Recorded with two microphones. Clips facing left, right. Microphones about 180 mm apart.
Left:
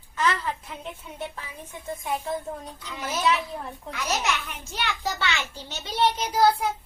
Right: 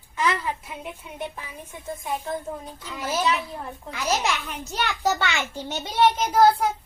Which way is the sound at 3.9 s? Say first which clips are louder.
Right 3 dB; 30° right (ahead or behind).